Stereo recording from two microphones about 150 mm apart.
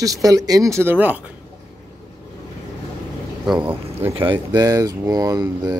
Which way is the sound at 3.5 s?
10° right (ahead or behind).